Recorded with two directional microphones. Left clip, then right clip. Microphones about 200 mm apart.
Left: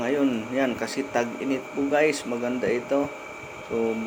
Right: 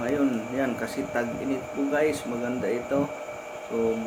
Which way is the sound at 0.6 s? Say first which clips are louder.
Left 3 dB; 5° left (ahead or behind).